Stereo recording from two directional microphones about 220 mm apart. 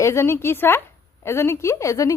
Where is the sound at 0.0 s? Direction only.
10° left (ahead or behind).